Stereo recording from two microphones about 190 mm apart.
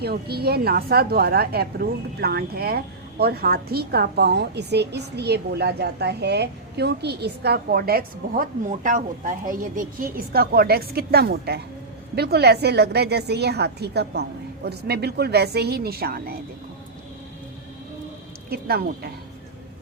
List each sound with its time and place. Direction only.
0.0 s a woman's voice: 55° right (ahead or behind)
18.5 s a woman's voice: 55° right (ahead or behind)